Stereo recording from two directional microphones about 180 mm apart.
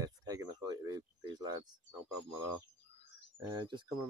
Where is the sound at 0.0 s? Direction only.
20° right (ahead or behind).